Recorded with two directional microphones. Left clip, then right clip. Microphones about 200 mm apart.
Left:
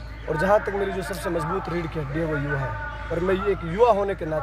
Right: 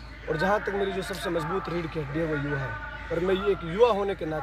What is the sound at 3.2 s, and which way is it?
Speech, centre (ahead or behind).